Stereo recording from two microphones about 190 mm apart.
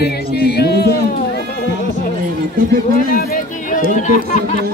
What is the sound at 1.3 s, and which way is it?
Music, 55° left (ahead or behind).